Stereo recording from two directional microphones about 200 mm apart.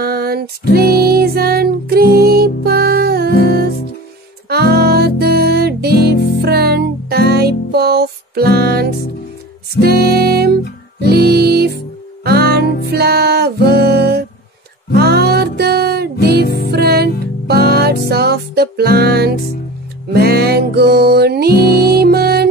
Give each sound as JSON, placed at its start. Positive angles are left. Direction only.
{"t": 0.0, "sound": "music", "side_deg": -50}
{"t": 4.5, "sound": "music", "side_deg": -50}
{"t": 6.1, "sound": "music", "side_deg": 55}
{"t": 6.4, "sound": "music", "side_deg": -50}
{"t": 16.4, "sound": "music", "side_deg": 55}
{"t": 16.7, "sound": "music", "side_deg": -50}